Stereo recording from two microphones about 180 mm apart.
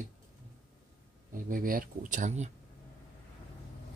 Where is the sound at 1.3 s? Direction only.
50° right (ahead or behind).